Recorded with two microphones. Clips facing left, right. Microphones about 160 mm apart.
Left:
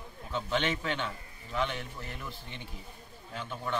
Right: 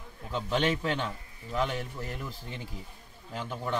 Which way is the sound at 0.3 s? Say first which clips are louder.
Right 3 dB; 40° right (ahead or behind).